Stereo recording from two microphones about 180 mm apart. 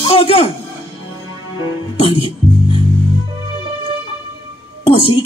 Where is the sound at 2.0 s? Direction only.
35° left (ahead or behind).